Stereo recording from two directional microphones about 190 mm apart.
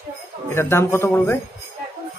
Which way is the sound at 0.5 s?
15° left (ahead or behind).